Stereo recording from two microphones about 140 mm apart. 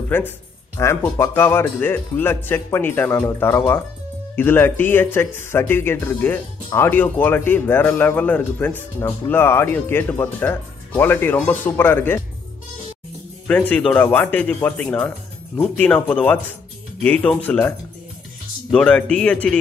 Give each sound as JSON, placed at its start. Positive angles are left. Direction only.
{"t": 0.1, "sound": "speech", "side_deg": 15}
{"t": 13.5, "sound": "speech", "side_deg": 10}